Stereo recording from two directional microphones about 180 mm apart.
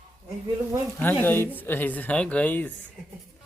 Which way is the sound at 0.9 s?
10° left (ahead or behind).